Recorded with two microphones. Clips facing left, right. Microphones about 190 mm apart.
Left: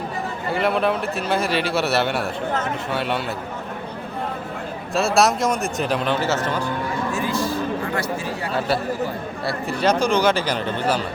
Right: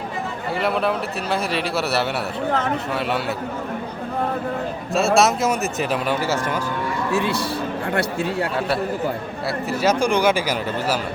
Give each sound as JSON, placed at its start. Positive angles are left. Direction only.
{"t": 0.5, "sound": "a man's voice", "side_deg": 0}
{"t": 4.9, "sound": "a man's voice", "side_deg": 0}
{"t": 7.1, "sound": "a man's voice", "side_deg": -70}
{"t": 9.5, "sound": "speech", "side_deg": -5}